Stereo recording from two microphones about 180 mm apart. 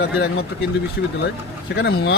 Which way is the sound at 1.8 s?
70° left (ahead or behind).